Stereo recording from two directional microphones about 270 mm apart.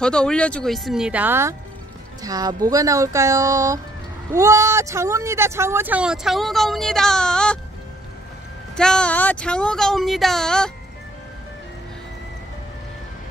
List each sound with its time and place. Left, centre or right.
0.0 s speech: centre
8.7 s speech: centre